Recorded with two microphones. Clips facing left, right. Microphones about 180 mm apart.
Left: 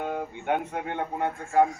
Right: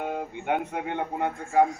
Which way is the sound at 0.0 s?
15° right (ahead or behind).